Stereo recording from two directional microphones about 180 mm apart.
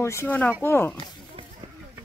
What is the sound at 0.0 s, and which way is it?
Speech, 15° left (ahead or behind).